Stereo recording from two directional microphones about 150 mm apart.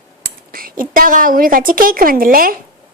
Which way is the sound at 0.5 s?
70° right (ahead or behind).